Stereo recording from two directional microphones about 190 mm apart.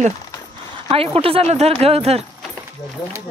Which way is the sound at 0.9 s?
30° right (ahead or behind).